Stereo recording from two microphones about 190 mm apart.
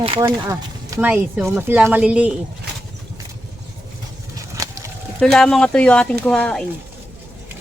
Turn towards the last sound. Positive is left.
turn(degrees=5)  # may be behind; listen again after turning